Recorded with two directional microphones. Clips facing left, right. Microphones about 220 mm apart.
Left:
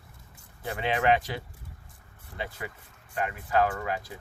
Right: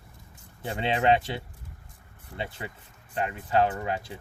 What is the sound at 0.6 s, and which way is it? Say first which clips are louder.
Speech: right 1 dB; 25° right (ahead or behind).